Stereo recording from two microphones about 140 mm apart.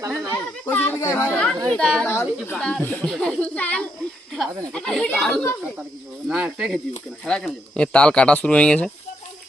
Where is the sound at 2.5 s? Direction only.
5° left (ahead or behind).